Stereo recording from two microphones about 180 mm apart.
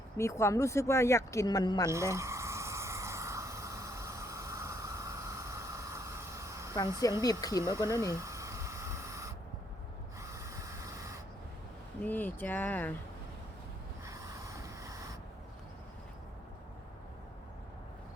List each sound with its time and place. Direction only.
0.2 s speech: 15° left (ahead or behind)
1.9 s a sound: 15° right (ahead or behind)
7.0 s speech: 20° left (ahead or behind)
7.6 s a sound: 15° right (ahead or behind)
10.2 s sanding: 15° right (ahead or behind)
12.0 s speech: 10° left (ahead or behind)
14.0 s sanding: 15° right (ahead or behind)